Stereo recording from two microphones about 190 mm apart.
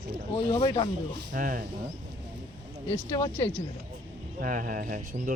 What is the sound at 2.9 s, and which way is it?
Speech, 15° left (ahead or behind).